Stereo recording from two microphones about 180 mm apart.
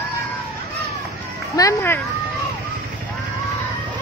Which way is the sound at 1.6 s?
15° left (ahead or behind).